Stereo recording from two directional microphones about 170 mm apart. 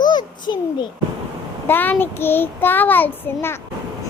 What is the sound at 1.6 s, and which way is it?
Child singing, 10° left (ahead or behind).